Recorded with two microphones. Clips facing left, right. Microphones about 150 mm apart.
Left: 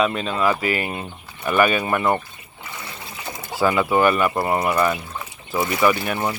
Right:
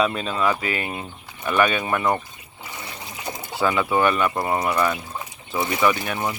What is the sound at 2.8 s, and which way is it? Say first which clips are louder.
Water: right 1 dB; 20° right (ahead or behind).